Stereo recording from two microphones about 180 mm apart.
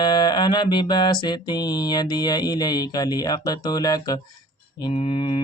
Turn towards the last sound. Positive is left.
turn(degrees=30)  # may be behind; listen again after turning